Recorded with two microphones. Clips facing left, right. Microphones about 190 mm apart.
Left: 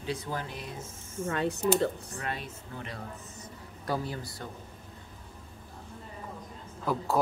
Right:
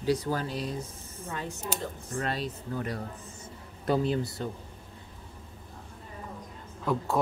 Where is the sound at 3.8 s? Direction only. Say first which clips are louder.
Right 7 dB; 20° right (ahead or behind).